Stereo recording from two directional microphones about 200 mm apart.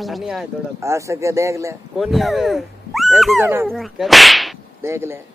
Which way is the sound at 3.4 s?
10° right (ahead or behind).